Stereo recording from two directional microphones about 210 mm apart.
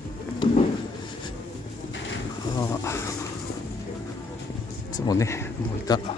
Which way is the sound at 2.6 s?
15° left (ahead or behind).